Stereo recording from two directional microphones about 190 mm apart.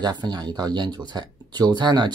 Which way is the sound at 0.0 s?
20° right (ahead or behind).